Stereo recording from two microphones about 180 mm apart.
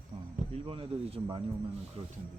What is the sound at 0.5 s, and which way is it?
Speech, 35° right (ahead or behind).